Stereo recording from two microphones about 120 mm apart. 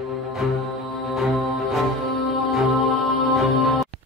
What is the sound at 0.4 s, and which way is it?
Speech, 5° right (ahead or behind).